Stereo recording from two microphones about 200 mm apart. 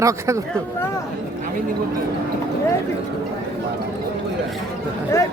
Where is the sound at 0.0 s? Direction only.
15° right (ahead or behind).